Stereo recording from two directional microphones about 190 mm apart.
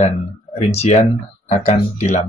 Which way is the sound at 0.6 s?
35° left (ahead or behind).